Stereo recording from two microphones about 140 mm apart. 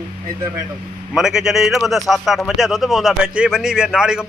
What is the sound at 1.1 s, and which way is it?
Speech, 5° right (ahead or behind).